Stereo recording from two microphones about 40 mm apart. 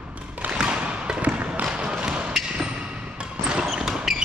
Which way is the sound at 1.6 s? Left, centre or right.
Right.